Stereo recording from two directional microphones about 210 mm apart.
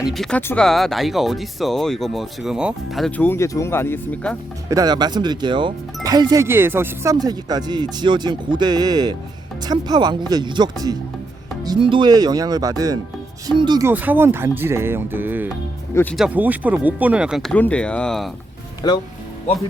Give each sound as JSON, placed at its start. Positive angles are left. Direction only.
{"t": 0.0, "sound": "speech", "side_deg": 0}
{"t": 4.7, "sound": "speech", "side_deg": -20}
{"t": 18.8, "sound": "speech", "side_deg": 20}